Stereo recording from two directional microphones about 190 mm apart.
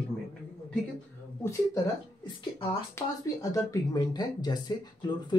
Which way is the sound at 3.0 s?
15° left (ahead or behind).